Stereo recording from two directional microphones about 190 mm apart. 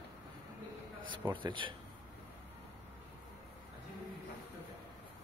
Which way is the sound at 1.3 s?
25° right (ahead or behind).